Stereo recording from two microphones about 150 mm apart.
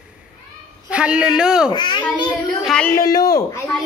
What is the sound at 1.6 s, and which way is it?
Speech, 30° left (ahead or behind).